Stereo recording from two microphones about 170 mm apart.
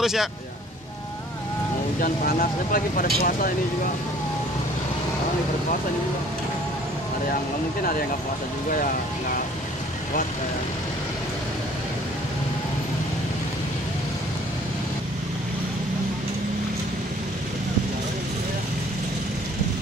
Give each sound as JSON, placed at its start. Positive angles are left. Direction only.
{"t": 0.0, "sound": "speech", "side_deg": 0}
{"t": 2.0, "sound": "speech", "side_deg": 55}